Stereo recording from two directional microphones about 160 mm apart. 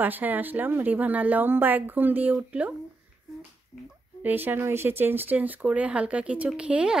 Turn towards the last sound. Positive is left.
turn(degrees=-5)  # may be behind; listen again after turning